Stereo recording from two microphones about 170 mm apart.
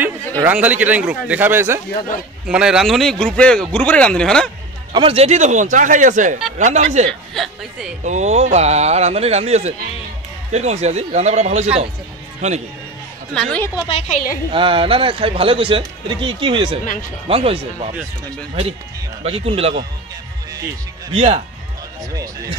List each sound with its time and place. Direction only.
0.5 s a man's voice: 10° right (ahead or behind)
4.9 s speech: 35° right (ahead or behind)
7.1 s speech: centre (ahead or behind)
8.0 s speech: 45° right (ahead or behind)
13.3 s speech: 5° left (ahead or behind)
13.8 s a woman's voice: 40° left (ahead or behind)
14.5 s speech: 30° right (ahead or behind)
19.2 s speech: 35° right (ahead or behind)
21.1 s speech: 35° right (ahead or behind)